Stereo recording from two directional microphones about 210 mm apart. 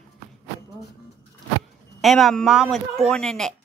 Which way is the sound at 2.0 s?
Centre (ahead or behind).